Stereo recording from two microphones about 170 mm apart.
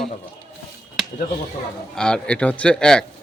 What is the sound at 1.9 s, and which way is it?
A man's voice, 5° left (ahead or behind).